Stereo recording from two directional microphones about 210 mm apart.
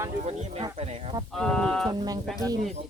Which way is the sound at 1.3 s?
Centre (ahead or behind).